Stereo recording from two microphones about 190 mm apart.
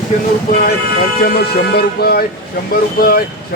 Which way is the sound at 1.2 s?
55° left (ahead or behind).